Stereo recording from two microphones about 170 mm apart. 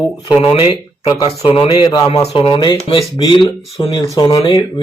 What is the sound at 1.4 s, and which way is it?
Speech, 30° left (ahead or behind).